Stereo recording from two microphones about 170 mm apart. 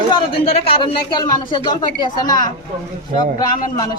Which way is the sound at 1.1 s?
25° left (ahead or behind).